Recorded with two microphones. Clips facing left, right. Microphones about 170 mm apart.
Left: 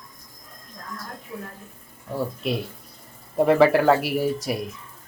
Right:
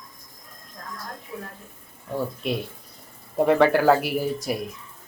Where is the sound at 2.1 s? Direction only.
Centre (ahead or behind).